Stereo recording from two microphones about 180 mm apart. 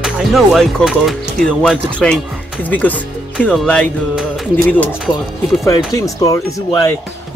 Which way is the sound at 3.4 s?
5° left (ahead or behind).